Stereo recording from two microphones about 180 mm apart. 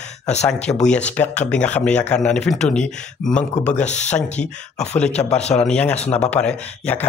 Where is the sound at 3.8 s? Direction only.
40° left (ahead or behind).